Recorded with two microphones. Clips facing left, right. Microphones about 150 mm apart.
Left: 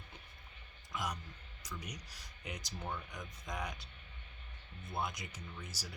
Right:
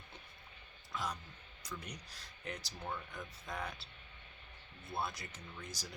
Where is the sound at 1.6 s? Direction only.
10° left (ahead or behind).